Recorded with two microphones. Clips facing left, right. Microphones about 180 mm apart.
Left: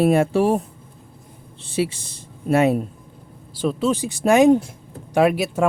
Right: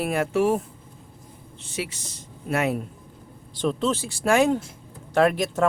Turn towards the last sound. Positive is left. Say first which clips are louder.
# left 3 dB
turn(degrees=10)  # may be behind; listen again after turning